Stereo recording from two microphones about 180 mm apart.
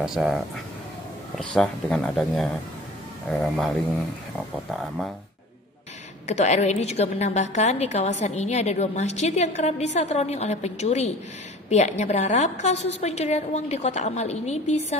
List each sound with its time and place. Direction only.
0.0 s speech: 5° right (ahead or behind)
6.2 s a woman's voice: 40° left (ahead or behind)